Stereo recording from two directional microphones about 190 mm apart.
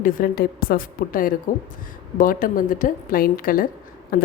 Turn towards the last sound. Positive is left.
turn(degrees=50)  # may be behind; listen again after turning